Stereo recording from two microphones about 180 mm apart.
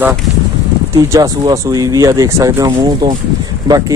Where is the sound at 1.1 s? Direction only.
20° right (ahead or behind).